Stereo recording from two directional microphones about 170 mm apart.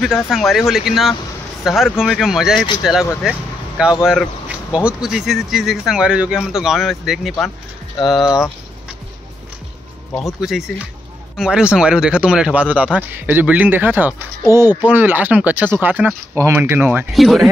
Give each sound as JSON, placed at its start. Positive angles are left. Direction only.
{"t": 0.0, "sound": "speech", "side_deg": 0}
{"t": 10.4, "sound": "speech", "side_deg": -5}
{"t": 17.1, "sound": "speech", "side_deg": 0}